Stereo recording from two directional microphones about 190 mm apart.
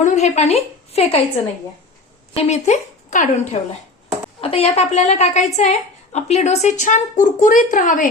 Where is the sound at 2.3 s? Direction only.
35° left (ahead or behind).